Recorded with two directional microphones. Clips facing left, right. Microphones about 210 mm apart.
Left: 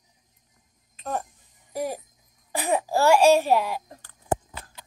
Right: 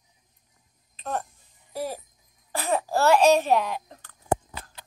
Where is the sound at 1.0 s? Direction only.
10° left (ahead or behind).